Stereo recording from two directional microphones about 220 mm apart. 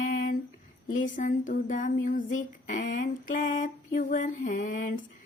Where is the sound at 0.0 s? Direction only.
35° left (ahead or behind).